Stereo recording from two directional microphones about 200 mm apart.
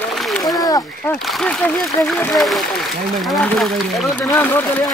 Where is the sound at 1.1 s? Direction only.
Centre (ahead or behind).